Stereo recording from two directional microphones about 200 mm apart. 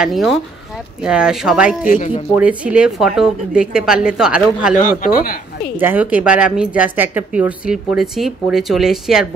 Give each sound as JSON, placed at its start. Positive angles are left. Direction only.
{"t": 0.0, "sound": "a woman's voice", "side_deg": 0}
{"t": 1.9, "sound": "speech", "side_deg": 40}
{"t": 2.3, "sound": "a woman's voice", "side_deg": -5}
{"t": 4.7, "sound": "speech", "side_deg": 45}
{"t": 5.8, "sound": "a woman's voice", "side_deg": -10}